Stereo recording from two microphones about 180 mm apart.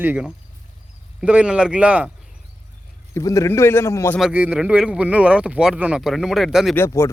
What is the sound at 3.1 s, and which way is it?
Speech, 15° left (ahead or behind).